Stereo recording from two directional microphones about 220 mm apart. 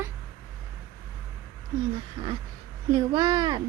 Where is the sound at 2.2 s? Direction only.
20° right (ahead or behind).